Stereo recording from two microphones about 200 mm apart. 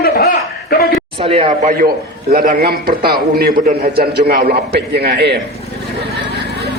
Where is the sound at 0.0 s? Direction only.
50° left (ahead or behind).